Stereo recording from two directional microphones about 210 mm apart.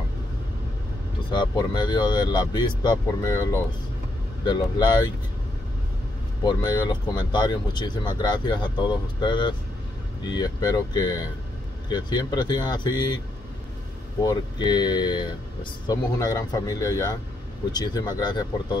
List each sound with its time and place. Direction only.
1.3 s speech: 20° left (ahead or behind)
6.4 s speech: 20° left (ahead or behind)
14.2 s speech: 20° left (ahead or behind)